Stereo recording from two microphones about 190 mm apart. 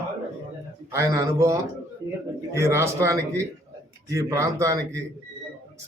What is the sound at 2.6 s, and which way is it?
A man's voice, 15° right (ahead or behind).